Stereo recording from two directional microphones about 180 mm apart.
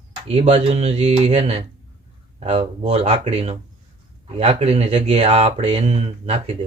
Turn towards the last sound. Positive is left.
turn(degrees=-35)  # may be behind; listen again after turning